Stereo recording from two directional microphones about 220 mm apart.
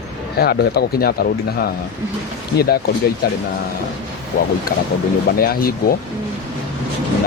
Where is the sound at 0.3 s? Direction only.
45° left (ahead or behind).